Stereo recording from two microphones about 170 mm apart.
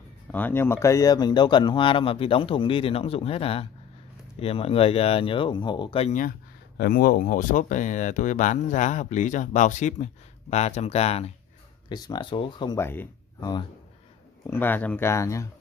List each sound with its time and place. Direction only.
0.3 s speech: 10° left (ahead or behind); by 6.1 s 35° left (ahead or behind)
6.8 s speech: 60° left (ahead or behind); by 11.3 s 35° left (ahead or behind)
11.9 s speech: 25° left (ahead or behind)
12.7 s speech: 15° left (ahead or behind)